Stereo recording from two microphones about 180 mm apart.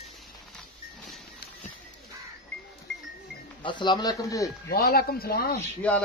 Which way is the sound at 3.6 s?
25° left (ahead or behind).